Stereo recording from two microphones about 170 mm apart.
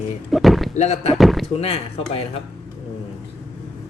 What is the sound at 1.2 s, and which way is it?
Speech, centre (ahead or behind).